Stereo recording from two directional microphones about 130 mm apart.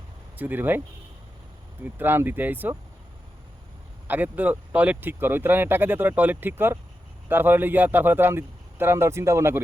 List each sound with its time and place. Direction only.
0.3 s speech: 15° right (ahead or behind)
1.8 s speech: 15° right (ahead or behind)
4.1 s speech: 10° right (ahead or behind)